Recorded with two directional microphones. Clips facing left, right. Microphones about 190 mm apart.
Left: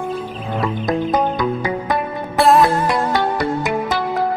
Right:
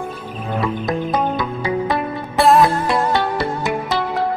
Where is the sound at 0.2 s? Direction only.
Centre (ahead or behind).